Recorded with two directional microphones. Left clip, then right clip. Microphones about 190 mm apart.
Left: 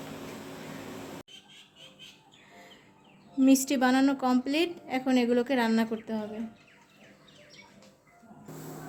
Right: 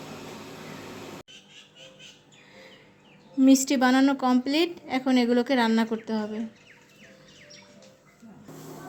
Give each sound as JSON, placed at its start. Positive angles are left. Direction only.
{"t": 3.4, "sound": "a woman's voice", "side_deg": -25}